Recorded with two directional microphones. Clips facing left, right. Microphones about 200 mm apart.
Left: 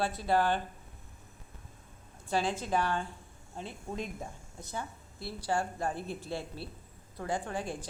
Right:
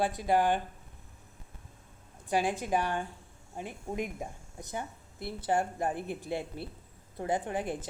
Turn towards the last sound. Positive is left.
turn(degrees=-20)  # may be behind; listen again after turning